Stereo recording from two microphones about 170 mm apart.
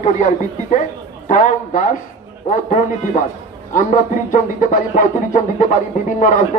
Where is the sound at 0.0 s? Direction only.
45° left (ahead or behind).